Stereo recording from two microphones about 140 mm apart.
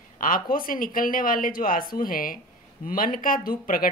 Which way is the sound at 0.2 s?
85° left.